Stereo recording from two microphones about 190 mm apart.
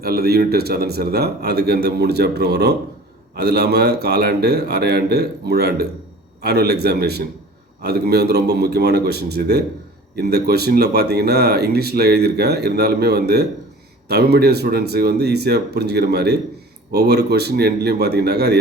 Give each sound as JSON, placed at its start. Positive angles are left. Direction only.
{"t": 0.0, "sound": "speech", "side_deg": -55}